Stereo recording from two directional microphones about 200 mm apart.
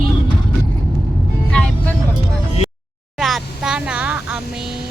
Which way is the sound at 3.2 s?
Centre (ahead or behind).